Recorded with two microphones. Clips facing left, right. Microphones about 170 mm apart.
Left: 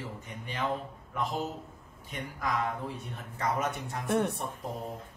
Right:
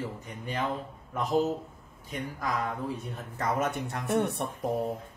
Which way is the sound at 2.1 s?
40° right (ahead or behind).